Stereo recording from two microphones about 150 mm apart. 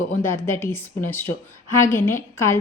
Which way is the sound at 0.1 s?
15° left (ahead or behind).